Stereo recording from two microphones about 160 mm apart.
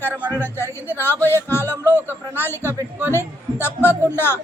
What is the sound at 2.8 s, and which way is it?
Speech, 10° right (ahead or behind).